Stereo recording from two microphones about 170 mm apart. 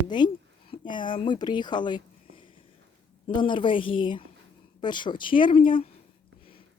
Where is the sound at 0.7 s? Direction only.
30° left (ahead or behind).